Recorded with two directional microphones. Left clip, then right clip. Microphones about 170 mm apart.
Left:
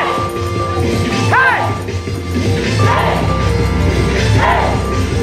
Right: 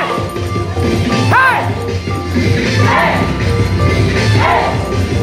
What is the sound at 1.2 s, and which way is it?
Music, 10° right (ahead or behind).